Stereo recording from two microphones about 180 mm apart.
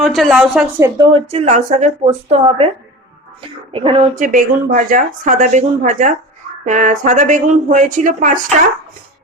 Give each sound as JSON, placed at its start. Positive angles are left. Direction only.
{"t": 0.0, "sound": "a woman's voice", "side_deg": 0}
{"t": 0.8, "sound": "a woman's voice", "side_deg": -25}
{"t": 1.3, "sound": "a woman's voice", "side_deg": -35}
{"t": 4.1, "sound": "speech", "side_deg": -45}